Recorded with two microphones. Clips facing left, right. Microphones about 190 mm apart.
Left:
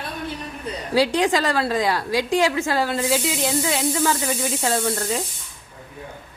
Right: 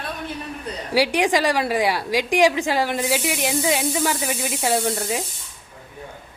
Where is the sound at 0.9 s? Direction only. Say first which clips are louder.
Even; 15° right (ahead or behind).